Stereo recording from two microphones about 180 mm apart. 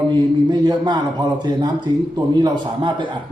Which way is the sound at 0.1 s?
25° right (ahead or behind).